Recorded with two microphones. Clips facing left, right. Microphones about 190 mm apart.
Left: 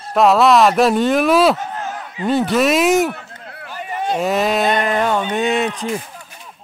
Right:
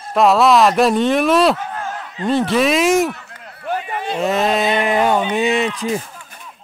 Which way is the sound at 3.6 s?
60° right (ahead or behind).